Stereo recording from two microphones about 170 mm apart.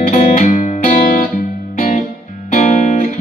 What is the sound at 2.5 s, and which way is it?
Music, 45° left (ahead or behind).